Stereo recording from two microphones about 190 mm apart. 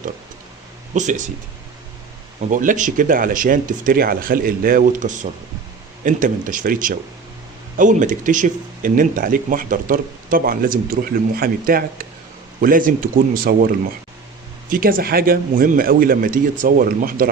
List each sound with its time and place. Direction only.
0.9 s speech: 40° right (ahead or behind)
2.4 s speech: 45° right (ahead or behind)
14.7 s speech: 50° right (ahead or behind)